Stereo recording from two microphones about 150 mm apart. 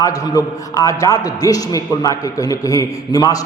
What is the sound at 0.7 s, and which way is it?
A man's voice, 20° left (ahead or behind).